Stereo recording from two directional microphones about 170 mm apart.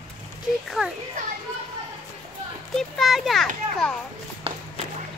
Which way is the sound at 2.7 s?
Centre (ahead or behind).